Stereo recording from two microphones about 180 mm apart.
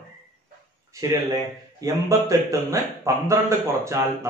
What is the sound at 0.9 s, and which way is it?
A man's voice, 20° right (ahead or behind).